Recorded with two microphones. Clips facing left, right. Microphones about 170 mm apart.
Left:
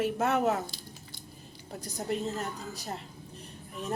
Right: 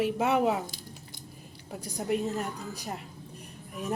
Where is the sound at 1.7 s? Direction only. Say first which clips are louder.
Right 3 dB; 10° right (ahead or behind).